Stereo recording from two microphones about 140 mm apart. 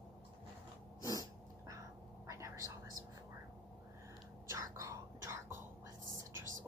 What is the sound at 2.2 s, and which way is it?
Whispering, 20° right (ahead or behind).